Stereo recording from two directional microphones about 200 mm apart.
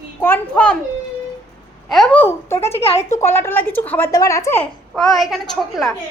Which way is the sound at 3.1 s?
10° left (ahead or behind).